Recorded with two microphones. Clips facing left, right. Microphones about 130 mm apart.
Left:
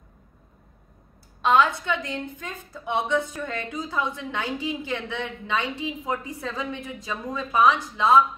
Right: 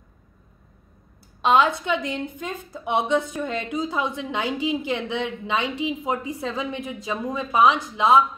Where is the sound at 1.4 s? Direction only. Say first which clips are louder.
Right 1 dB; 20° right (ahead or behind).